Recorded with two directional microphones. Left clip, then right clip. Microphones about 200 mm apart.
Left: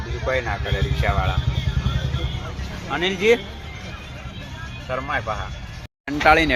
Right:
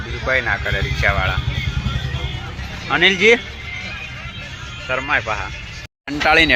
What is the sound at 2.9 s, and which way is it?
Speech, 20° right (ahead or behind).